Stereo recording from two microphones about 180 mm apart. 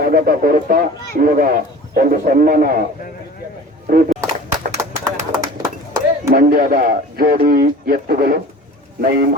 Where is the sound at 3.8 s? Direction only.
50° right (ahead or behind).